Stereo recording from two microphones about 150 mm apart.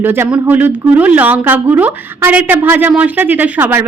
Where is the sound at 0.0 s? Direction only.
15° right (ahead or behind).